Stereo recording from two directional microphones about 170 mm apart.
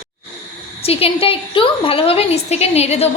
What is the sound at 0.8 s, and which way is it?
A woman's voice, 35° left (ahead or behind).